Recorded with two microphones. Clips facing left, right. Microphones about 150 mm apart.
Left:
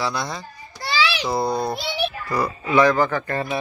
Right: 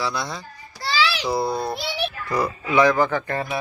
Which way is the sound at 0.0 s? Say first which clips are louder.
Left 1 dB; centre (ahead or behind).